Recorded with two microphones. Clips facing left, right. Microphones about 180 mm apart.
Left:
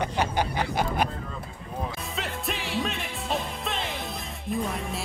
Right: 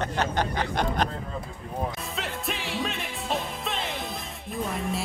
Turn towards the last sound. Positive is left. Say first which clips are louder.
# even
turn(degrees=0)  # may be behind; listen again after turning